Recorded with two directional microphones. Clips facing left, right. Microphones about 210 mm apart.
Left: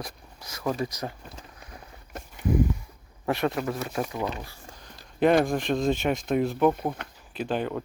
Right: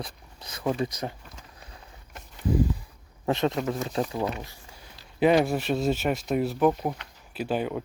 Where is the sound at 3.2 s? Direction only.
20° right (ahead or behind).